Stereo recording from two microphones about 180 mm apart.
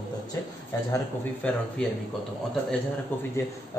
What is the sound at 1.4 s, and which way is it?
Speech, 10° left (ahead or behind).